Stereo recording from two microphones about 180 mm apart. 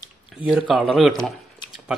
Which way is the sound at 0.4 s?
5° right (ahead or behind).